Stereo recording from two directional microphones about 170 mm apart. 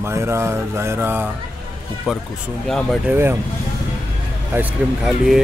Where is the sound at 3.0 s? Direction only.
10° right (ahead or behind).